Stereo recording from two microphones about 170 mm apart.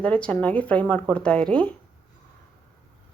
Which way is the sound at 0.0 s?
5° left (ahead or behind).